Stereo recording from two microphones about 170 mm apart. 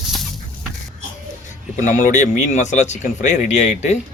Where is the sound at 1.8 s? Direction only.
45° left (ahead or behind).